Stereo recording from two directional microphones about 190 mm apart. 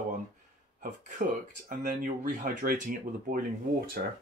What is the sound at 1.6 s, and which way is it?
Speech, 45° right (ahead or behind).